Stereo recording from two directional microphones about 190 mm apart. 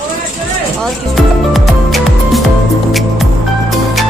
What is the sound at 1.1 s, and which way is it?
Music, centre (ahead or behind).